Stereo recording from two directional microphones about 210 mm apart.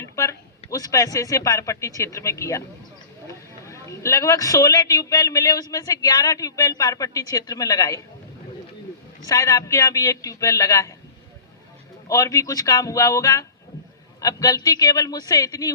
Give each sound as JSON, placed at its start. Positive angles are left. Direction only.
{"t": 0.0, "sound": "a sound", "side_deg": 15}
{"t": 0.7, "sound": "a man's voice", "side_deg": 15}
{"t": 9.2, "sound": "a man's voice", "side_deg": 15}
{"t": 12.0, "sound": "a man's voice", "side_deg": 15}